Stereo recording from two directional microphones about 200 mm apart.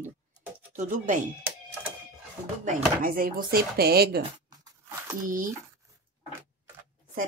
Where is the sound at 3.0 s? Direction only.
45° right (ahead or behind).